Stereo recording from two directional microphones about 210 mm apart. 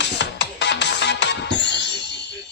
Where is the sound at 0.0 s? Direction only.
55° left (ahead or behind).